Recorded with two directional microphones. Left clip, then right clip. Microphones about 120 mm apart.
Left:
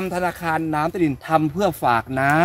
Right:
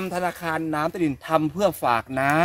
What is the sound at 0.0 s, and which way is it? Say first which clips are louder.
Speech: left 3 dB; 25° right (ahead or behind).